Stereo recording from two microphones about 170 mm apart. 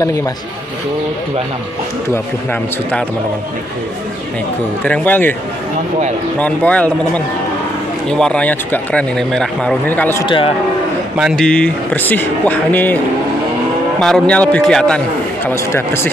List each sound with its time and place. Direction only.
4.8 s speech: 10° left (ahead or behind)
6.4 s speech: 10° left (ahead or behind)
8.1 s speech: 5° left (ahead or behind)
10.2 s a man's voice: 30° left (ahead or behind)
11.1 s a man's voice: centre (ahead or behind)
15.4 s speech: 15° left (ahead or behind)